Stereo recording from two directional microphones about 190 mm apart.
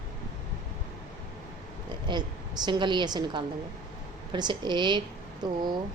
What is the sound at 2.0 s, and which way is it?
A woman's voice, 25° right (ahead or behind).